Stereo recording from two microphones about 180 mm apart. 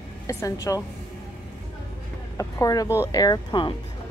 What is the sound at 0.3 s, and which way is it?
Speech, 15° left (ahead or behind).